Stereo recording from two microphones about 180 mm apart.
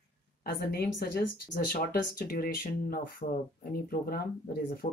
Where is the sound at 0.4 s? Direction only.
60° left (ahead or behind).